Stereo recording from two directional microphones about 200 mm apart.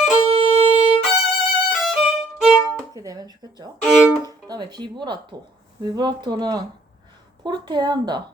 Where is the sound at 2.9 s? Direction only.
20° right (ahead or behind).